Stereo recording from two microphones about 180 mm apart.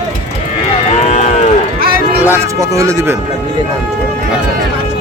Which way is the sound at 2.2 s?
15° right (ahead or behind).